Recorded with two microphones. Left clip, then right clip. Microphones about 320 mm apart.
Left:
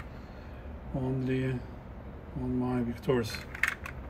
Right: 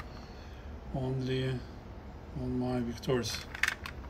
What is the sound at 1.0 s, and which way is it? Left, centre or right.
Speech, centre.